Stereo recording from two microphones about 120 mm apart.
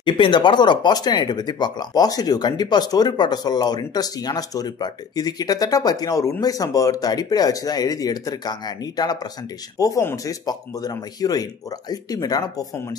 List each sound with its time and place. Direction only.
0.0 s speech: 40° left (ahead or behind)